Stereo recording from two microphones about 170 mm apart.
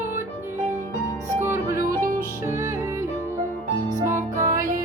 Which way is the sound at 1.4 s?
15° right (ahead or behind).